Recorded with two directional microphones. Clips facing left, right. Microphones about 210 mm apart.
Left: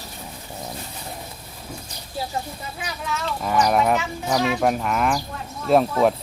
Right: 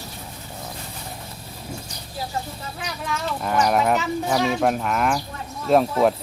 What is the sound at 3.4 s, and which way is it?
Speech, centre (ahead or behind).